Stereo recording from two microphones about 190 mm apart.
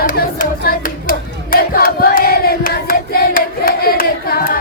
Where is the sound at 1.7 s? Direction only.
50° left (ahead or behind).